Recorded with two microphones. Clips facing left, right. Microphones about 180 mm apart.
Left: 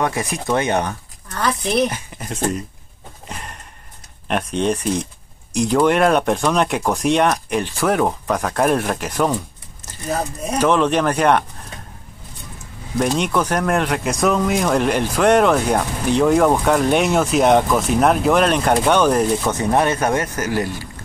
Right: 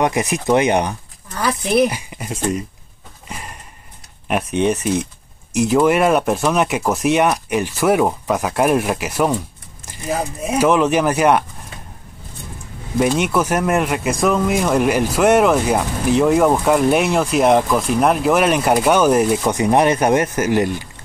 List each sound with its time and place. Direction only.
0.0 s speech: 15° right (ahead or behind)
3.3 s a sound: 5° right (ahead or behind)
4.3 s speech: 5° right (ahead or behind)
13.0 s speech: 5° right (ahead or behind)